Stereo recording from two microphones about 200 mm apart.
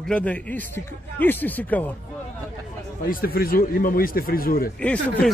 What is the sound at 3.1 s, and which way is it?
Speech, 45° left (ahead or behind).